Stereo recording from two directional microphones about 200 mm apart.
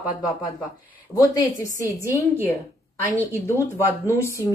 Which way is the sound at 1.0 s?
15° left (ahead or behind).